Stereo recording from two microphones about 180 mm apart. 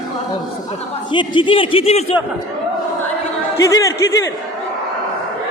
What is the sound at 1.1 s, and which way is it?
Speech, 25° left (ahead or behind).